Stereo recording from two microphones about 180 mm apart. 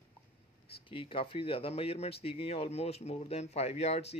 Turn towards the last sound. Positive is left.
turn(degrees=35)  # may be behind; listen again after turning